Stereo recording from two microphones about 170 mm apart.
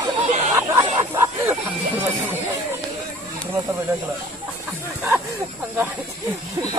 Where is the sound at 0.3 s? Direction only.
45° right (ahead or behind).